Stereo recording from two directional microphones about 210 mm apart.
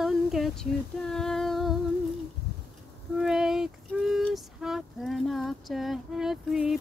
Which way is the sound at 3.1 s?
Centre (ahead or behind).